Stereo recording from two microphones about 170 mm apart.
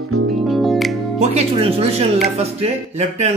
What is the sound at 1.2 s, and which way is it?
Speech, 35° right (ahead or behind).